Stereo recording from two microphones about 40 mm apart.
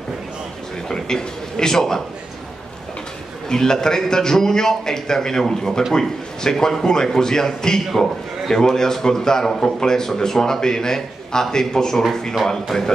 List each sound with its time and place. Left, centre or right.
0.8 s a man's voice: centre
3.4 s a man's voice: centre